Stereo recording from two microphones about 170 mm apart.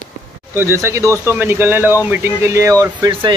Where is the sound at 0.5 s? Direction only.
15° right (ahead or behind).